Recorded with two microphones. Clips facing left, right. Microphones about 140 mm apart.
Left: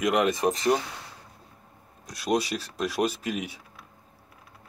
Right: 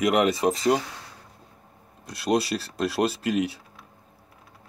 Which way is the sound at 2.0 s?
70° right (ahead or behind).